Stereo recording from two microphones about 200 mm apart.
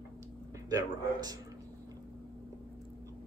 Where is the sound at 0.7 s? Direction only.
20° right (ahead or behind).